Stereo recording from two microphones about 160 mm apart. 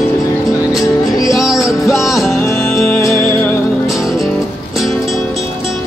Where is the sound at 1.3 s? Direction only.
Centre (ahead or behind).